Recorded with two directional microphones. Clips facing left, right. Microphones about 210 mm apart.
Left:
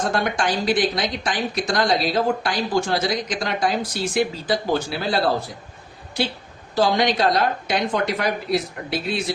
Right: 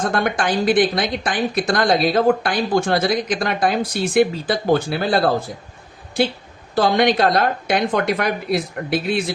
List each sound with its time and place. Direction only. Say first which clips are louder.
0.0 s a woman's voice: right 2 dB; 55° right (ahead or behind)
6.7 s a woman's voice: right 3 dB; 55° right (ahead or behind)